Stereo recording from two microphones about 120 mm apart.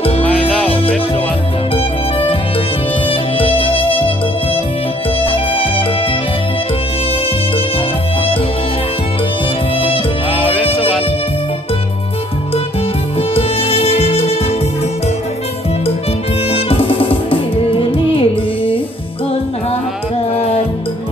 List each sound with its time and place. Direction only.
3.1 s music: 50° left (ahead or behind)
5.2 s music: 50° left (ahead or behind)
10.6 s music: 55° left (ahead or behind)
13.3 s music: 55° left (ahead or behind)
16.4 s music: 55° left (ahead or behind)
20.3 s music: 60° left (ahead or behind)